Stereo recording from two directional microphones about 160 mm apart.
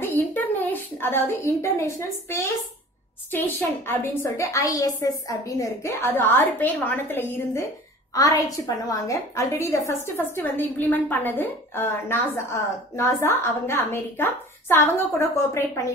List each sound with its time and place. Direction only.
0.0 s a woman's voice: 15° left (ahead or behind)